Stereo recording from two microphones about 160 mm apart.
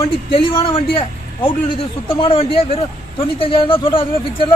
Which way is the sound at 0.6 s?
35° left (ahead or behind).